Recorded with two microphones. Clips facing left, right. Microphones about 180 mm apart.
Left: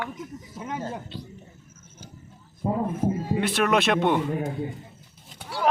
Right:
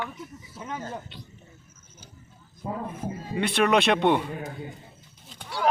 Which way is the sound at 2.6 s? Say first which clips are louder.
Left 7 dB; 25° left (ahead or behind).